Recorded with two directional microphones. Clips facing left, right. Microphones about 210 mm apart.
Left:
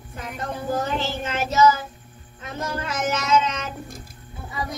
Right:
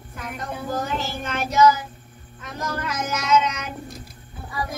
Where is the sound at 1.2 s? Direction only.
25° left (ahead or behind).